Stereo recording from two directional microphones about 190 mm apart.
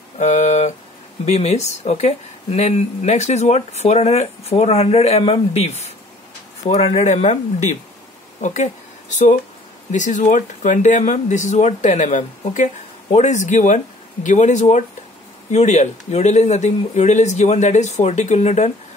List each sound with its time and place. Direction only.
0.2 s speech: 40° left (ahead or behind)
8.4 s speech: 40° left (ahead or behind)
9.8 s speech: 40° left (ahead or behind)